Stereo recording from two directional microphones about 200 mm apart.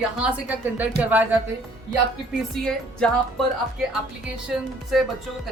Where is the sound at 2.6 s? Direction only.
5° left (ahead or behind).